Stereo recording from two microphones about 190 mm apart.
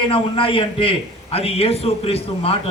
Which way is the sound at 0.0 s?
30° left (ahead or behind).